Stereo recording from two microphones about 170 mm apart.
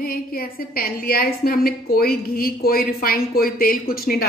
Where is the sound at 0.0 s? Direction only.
60° left (ahead or behind).